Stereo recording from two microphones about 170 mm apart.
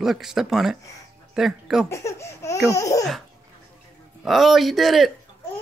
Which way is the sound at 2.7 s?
20° left (ahead or behind).